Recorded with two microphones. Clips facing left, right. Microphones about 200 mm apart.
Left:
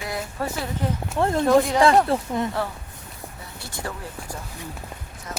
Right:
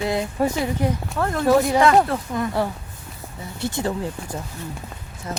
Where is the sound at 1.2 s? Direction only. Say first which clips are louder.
Even; 25° left (ahead or behind).